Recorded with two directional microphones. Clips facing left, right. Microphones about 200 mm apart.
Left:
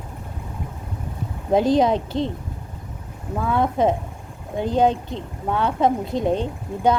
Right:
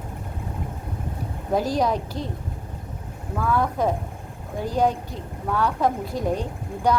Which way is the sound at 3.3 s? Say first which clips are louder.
Left 2 dB; 25° left (ahead or behind).